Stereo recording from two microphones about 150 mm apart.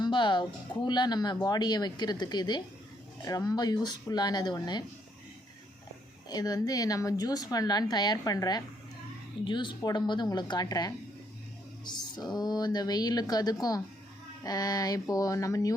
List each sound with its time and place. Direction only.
0.0 s speech: 30° left (ahead or behind)
6.2 s speech: 25° left (ahead or behind)